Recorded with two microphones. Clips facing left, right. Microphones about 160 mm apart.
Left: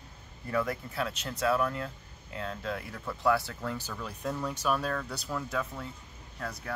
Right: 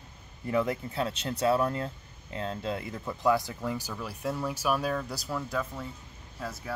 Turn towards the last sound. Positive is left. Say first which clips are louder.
# right 1 dB
turn(degrees=-5)  # may be behind; listen again after turning